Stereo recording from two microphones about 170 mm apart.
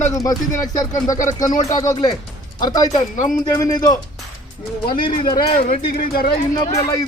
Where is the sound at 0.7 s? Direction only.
20° left (ahead or behind).